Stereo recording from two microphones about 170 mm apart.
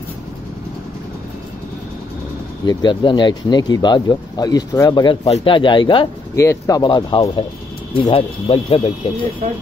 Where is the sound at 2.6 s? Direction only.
25° left (ahead or behind).